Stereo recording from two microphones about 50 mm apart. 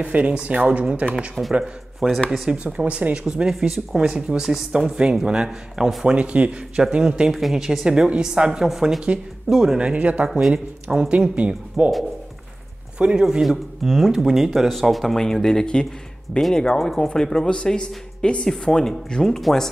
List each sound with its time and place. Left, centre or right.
0.0 s speech: right
1.6 s speech: centre
2.5 s speech: right
3.3 s speech: centre
9.8 s speech: right
13.0 s speech: centre